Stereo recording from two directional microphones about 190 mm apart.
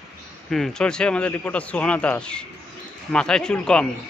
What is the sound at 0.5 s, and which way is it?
Speech, 5° left (ahead or behind).